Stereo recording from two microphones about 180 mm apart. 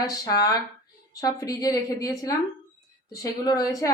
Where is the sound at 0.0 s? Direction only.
20° left (ahead or behind).